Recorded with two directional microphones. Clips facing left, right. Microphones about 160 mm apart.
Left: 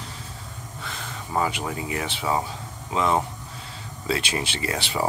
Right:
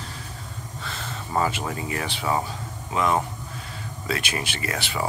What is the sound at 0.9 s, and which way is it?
Speech, 15° left (ahead or behind).